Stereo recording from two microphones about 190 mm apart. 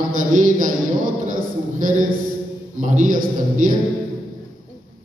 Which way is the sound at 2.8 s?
45° right (ahead or behind).